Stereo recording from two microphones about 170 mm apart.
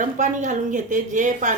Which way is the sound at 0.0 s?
50° right (ahead or behind).